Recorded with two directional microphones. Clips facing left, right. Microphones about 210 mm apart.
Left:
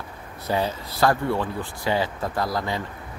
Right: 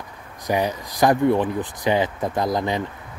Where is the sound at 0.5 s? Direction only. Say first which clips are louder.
Right 3 dB; 15° right (ahead or behind).